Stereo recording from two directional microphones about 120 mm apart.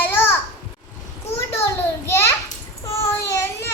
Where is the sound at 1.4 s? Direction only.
20° left (ahead or behind).